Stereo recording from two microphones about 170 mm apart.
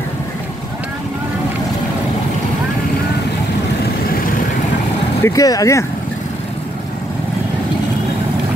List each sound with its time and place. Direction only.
5.2 s speech: 20° left (ahead or behind)